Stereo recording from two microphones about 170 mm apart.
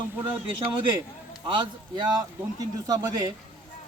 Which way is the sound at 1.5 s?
30° right (ahead or behind).